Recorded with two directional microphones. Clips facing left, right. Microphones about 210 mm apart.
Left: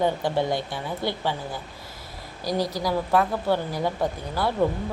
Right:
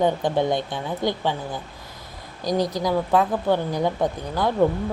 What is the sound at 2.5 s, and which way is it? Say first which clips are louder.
Speech: right 3 dB; 20° right (ahead or behind).